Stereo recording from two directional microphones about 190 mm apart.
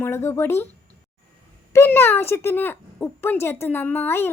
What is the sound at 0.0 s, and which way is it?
Speech, 10° left (ahead or behind).